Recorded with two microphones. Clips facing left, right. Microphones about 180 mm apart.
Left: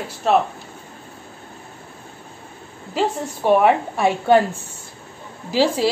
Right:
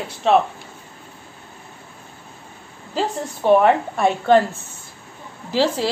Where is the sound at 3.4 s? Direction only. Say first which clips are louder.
Right 1 dB; 10° left (ahead or behind).